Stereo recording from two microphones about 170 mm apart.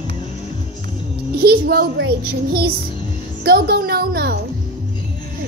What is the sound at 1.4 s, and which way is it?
A woman's voice, 65° right (ahead or behind).